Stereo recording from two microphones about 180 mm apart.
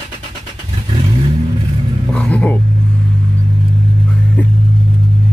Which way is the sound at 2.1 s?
5° left (ahead or behind).